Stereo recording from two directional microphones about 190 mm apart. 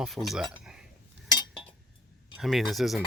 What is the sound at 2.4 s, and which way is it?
Speech, centre (ahead or behind).